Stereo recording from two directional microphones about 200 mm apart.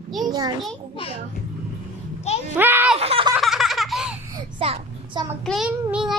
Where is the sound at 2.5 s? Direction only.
10° right (ahead or behind).